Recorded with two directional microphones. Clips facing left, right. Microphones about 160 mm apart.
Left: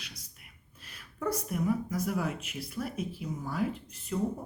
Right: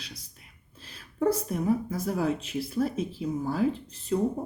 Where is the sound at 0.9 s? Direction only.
30° right (ahead or behind).